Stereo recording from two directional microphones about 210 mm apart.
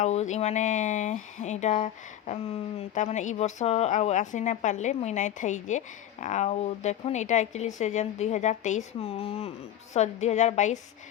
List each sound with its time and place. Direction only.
0.0 s speech: 35° left (ahead or behind)